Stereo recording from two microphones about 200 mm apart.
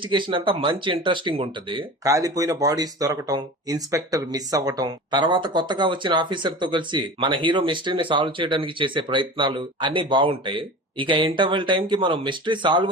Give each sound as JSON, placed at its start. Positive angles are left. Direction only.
{"t": 0.0, "sound": "speech", "side_deg": -25}